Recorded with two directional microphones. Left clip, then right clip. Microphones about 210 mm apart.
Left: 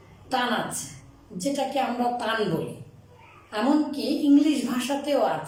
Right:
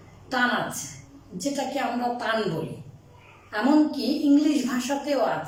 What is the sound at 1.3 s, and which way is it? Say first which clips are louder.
Speech: left 2 dB; 10° left (ahead or behind).